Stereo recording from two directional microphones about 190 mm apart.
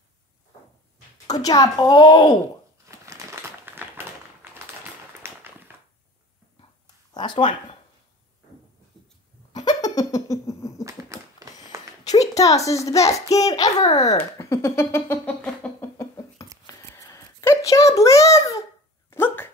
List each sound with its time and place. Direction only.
1.2 s a woman's voice: 20° left (ahead or behind)
2.9 s crumpling: 15° right (ahead or behind)
4.4 s a sound: 10° right (ahead or behind)
7.2 s speech: 25° left (ahead or behind)
9.7 s a sound: 20° left (ahead or behind)
10.8 s typewriter: 15° right (ahead or behind)
12.0 s a child's voice: 20° left (ahead or behind)
14.3 s a sound: 15° left (ahead or behind)
19.0 s dog: 10° left (ahead or behind)